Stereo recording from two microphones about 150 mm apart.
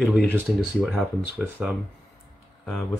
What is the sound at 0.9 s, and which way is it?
Speech, 10° right (ahead or behind).